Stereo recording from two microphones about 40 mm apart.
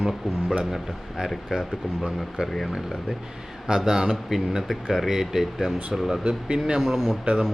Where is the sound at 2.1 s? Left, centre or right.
Centre.